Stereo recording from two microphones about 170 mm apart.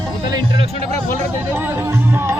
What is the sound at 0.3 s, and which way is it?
Music, 25° right (ahead or behind).